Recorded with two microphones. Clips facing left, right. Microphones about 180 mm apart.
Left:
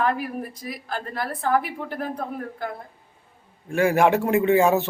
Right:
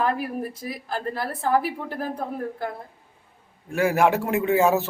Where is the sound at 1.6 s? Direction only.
30° right (ahead or behind).